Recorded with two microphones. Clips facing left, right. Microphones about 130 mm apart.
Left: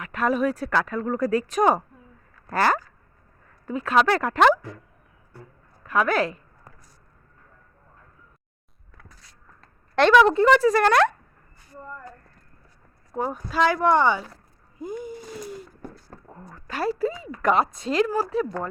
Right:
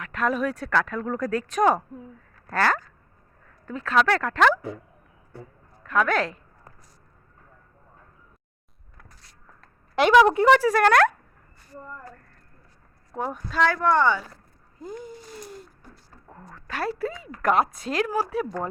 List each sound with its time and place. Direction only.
0.0 s speech: 5° left (ahead or behind)
5.8 s speech: 5° left (ahead or behind)
9.6 s a sound: 5° right (ahead or behind)
10.7 s speech: 5° right (ahead or behind)
13.1 s speech: centre (ahead or behind)
13.6 s speech: 15° left (ahead or behind)
16.3 s speech: 5° left (ahead or behind)